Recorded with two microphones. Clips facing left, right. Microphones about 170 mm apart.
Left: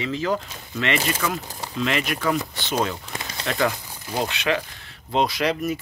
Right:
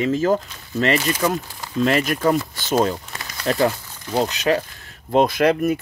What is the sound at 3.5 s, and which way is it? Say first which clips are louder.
Speech: right 5 dB; 40° right (ahead or behind).